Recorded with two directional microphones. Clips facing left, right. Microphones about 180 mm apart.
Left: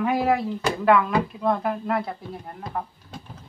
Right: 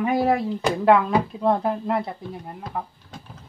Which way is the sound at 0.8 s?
30° right (ahead or behind).